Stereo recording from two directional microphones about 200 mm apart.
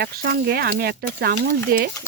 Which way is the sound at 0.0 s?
50° right (ahead or behind).